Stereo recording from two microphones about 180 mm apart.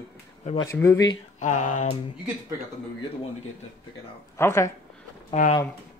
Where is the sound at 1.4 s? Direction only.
45° left (ahead or behind).